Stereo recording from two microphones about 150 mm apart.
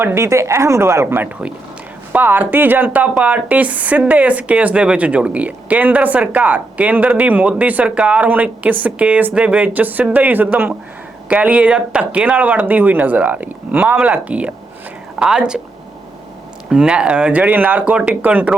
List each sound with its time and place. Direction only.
0.0 s a woman's voice: 15° right (ahead or behind)
16.6 s speech: 5° right (ahead or behind)